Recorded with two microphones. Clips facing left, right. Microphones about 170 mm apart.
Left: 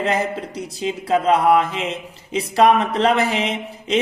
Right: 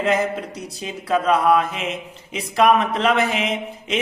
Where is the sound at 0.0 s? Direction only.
30° left (ahead or behind).